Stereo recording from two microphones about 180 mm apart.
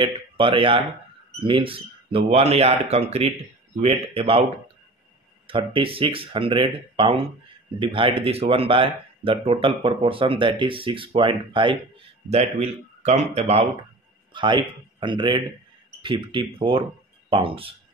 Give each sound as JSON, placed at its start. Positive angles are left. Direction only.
{"t": 0.0, "sound": "speech", "side_deg": -30}
{"t": 5.5, "sound": "speech", "side_deg": -30}